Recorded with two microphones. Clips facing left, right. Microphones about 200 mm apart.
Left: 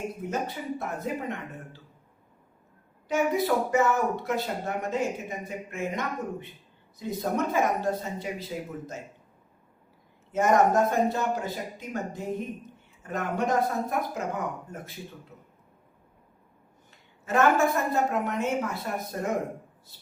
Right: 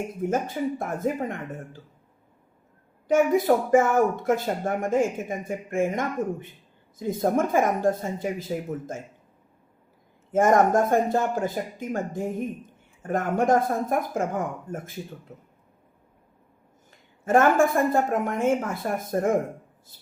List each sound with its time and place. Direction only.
0.3 s speech: 50° right (ahead or behind)
3.1 s speech: 50° right (ahead or behind)
10.3 s speech: 50° right (ahead or behind)
17.2 s speech: 50° right (ahead or behind)